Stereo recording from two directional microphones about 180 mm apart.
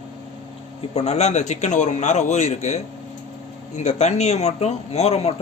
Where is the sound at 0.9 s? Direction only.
40° left (ahead or behind).